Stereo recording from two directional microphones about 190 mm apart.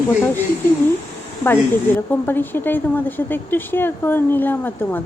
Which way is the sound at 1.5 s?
10° left (ahead or behind).